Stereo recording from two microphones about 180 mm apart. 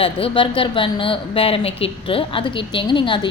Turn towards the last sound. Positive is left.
turn(degrees=25)  # may be behind; listen again after turning